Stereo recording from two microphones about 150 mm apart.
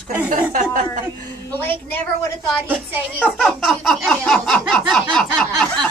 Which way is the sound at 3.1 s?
10° left (ahead or behind).